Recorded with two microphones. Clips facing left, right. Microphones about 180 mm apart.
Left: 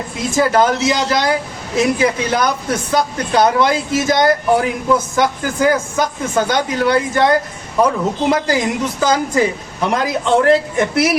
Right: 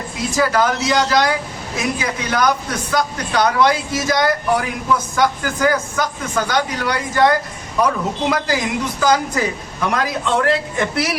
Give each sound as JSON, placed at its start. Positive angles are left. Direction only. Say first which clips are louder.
{"t": 0.3, "sound": "speech", "louder": "left 3 dB", "side_deg": 25}
{"t": 8.3, "sound": "speech", "louder": "left 4 dB", "side_deg": 25}